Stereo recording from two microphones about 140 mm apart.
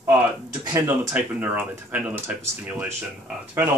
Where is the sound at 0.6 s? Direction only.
25° right (ahead or behind).